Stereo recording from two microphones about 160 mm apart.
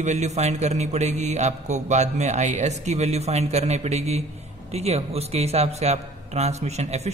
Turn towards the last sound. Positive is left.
turn(degrees=-45)  # may be behind; listen again after turning